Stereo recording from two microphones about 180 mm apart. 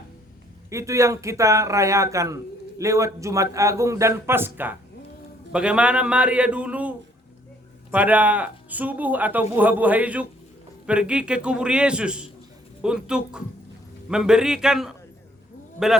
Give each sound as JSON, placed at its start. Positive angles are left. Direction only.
{"t": 0.7, "sound": "a man's voice", "side_deg": -15}